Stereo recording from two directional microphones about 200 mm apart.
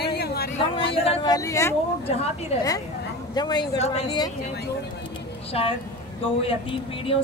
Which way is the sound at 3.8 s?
30° left (ahead or behind).